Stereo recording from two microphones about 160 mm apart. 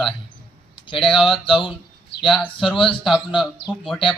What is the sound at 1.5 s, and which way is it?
Speech, 30° left (ahead or behind).